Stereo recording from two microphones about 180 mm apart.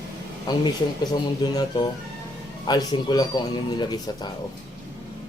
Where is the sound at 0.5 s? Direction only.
25° left (ahead or behind).